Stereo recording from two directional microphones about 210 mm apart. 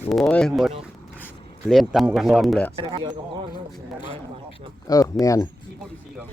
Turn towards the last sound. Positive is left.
turn(degrees=15)  # may be behind; listen again after turning